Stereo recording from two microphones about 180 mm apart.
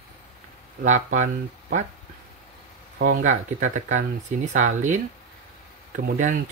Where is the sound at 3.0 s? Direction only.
50° right (ahead or behind).